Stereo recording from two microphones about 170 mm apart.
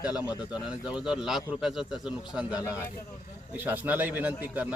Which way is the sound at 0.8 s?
5° right (ahead or behind).